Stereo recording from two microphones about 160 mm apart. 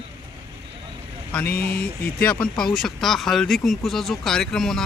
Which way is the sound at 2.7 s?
Centre (ahead or behind).